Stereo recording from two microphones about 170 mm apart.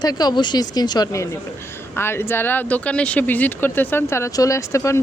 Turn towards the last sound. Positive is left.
turn(degrees=15)  # may be behind; listen again after turning